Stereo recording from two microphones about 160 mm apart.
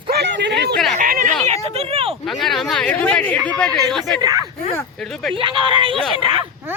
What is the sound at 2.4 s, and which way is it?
Speech, 5° left (ahead or behind).